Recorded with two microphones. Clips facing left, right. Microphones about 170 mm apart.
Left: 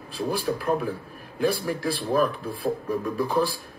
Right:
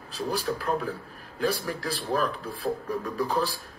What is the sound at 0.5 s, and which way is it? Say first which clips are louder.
A man's voice: left 3 dB; 15° left (ahead or behind).